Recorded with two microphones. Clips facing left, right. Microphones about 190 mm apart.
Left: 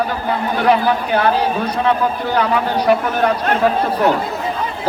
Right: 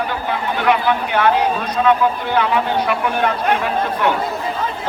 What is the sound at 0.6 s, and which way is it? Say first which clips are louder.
A man's voice: left 2 dB; 35° left (ahead or behind).